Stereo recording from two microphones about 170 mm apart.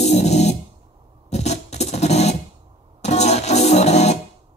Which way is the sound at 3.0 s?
40° left (ahead or behind).